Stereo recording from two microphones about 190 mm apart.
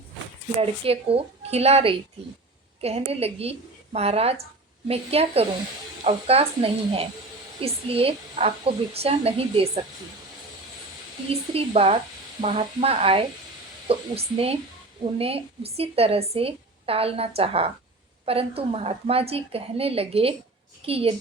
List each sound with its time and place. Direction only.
0.6 s a woman's voice: 30° right (ahead or behind)
11.5 s a woman's voice: 30° right (ahead or behind)